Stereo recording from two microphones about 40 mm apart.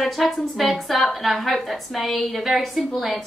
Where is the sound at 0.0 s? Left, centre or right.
Centre.